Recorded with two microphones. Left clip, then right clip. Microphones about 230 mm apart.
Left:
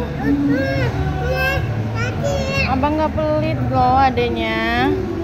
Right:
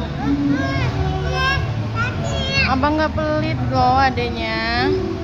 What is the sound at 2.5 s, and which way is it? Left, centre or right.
Speech, centre.